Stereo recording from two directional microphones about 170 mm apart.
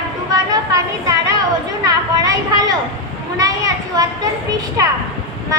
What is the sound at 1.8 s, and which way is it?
A woman's voice, 20° right (ahead or behind).